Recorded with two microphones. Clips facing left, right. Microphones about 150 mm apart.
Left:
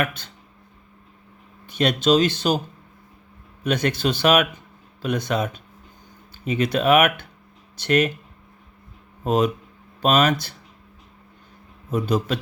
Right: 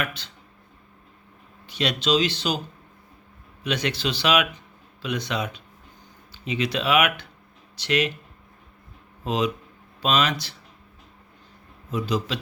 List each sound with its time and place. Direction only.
0.0 s speech: 50° left (ahead or behind)
1.6 s speech: 50° left (ahead or behind)
3.6 s speech: 50° left (ahead or behind)
9.2 s speech: 50° left (ahead or behind)
11.9 s speech: 50° left (ahead or behind)